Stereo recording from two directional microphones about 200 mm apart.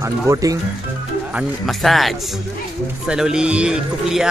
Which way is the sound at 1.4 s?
Centre (ahead or behind).